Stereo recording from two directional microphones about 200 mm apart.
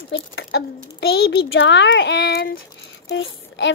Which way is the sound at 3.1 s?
65° left (ahead or behind).